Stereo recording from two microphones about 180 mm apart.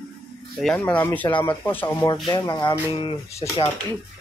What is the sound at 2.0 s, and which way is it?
Speech, 25° left (ahead or behind).